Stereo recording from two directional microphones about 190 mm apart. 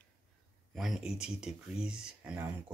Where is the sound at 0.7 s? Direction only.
5° right (ahead or behind).